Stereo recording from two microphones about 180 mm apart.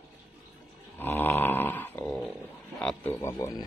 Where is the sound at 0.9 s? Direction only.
10° left (ahead or behind).